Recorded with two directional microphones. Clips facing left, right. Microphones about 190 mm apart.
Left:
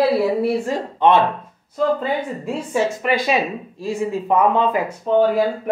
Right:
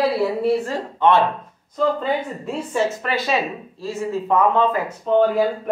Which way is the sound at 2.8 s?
15° left (ahead or behind).